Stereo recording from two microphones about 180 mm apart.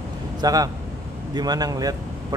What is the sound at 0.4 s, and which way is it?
A man's voice, 20° right (ahead or behind).